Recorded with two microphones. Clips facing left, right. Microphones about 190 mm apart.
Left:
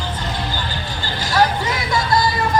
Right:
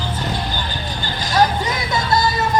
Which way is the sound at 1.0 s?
20° right (ahead or behind).